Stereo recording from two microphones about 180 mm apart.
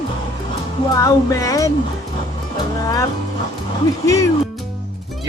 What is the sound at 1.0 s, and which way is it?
Speech, 20° left (ahead or behind).